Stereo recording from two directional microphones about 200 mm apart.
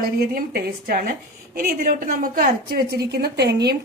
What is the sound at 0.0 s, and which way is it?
A woman's voice, 50° right (ahead or behind).